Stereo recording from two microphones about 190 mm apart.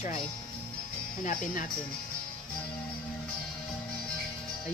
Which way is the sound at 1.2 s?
45° left (ahead or behind).